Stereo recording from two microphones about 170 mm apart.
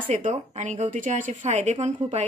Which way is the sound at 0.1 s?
45° right (ahead or behind).